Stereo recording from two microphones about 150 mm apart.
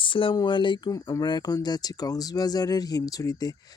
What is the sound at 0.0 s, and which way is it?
Speech, 35° left (ahead or behind).